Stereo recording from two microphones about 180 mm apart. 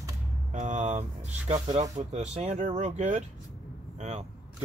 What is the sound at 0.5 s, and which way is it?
Speech, 40° right (ahead or behind).